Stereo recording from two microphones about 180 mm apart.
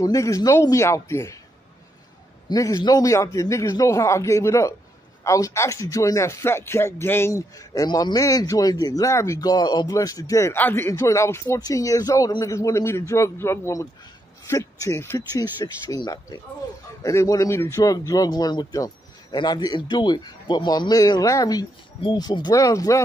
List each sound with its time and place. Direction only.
0.0 s speech: 20° left (ahead or behind)
2.5 s a man's voice: 20° left (ahead or behind)